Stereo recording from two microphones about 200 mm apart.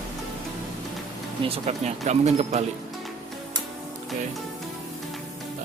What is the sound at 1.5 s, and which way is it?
Speech, 30° right (ahead or behind).